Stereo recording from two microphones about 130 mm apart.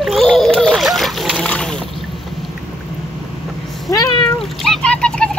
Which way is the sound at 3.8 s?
30° left (ahead or behind).